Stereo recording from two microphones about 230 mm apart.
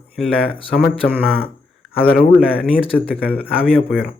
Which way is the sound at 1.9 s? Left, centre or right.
Centre.